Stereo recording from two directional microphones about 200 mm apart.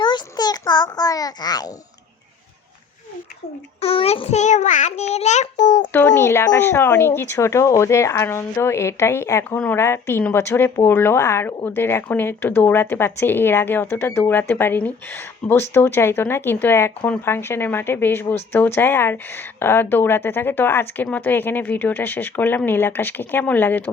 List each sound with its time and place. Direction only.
0.0 s a sound: 20° left (ahead or behind)
3.8 s a child's voice: 30° left (ahead or behind)
5.9 s speech: 10° left (ahead or behind)